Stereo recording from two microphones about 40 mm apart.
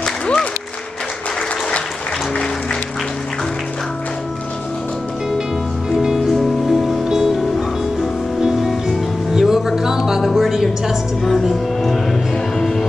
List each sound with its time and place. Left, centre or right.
0.0 s music: left
6.1 s music: centre
8.8 s music: centre
11.8 s music: centre